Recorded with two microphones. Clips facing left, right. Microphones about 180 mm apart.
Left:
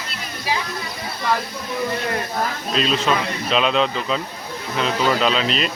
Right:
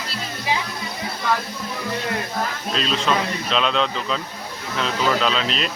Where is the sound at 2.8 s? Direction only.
5° left (ahead or behind).